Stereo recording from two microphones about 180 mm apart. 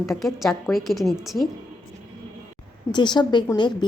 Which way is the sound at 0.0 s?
Centre (ahead or behind).